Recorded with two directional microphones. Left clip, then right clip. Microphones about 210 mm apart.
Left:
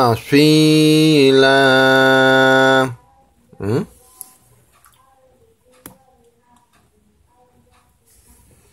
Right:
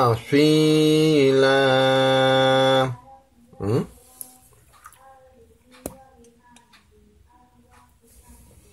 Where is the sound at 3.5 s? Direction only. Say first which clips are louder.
Left 4 dB; 20° left (ahead or behind).